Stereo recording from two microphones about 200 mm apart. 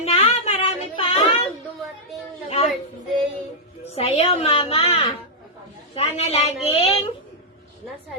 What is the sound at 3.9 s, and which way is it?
A woman's voice, 30° left (ahead or behind).